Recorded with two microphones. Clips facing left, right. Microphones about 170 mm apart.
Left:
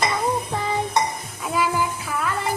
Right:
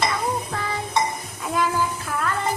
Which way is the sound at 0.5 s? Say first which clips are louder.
Left 3 dB; 20° left (ahead or behind).